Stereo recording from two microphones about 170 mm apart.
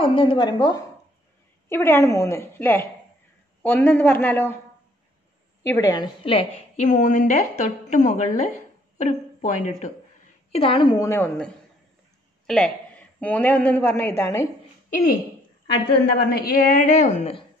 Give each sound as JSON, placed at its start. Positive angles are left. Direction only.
{"t": 0.0, "sound": "a woman's voice", "side_deg": 30}
{"t": 5.6, "sound": "a woman's voice", "side_deg": 20}
{"t": 6.2, "sound": "a woman's voice", "side_deg": 40}
{"t": 10.5, "sound": "a woman's voice", "side_deg": 35}
{"t": 11.1, "sound": "a woman's voice", "side_deg": 10}
{"t": 16.2, "sound": "a woman's voice", "side_deg": 70}